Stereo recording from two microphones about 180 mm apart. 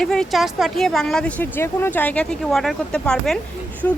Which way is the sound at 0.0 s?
5° left (ahead or behind).